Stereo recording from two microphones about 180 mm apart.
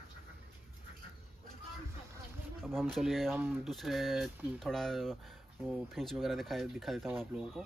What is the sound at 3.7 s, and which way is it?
Speech, centre (ahead or behind).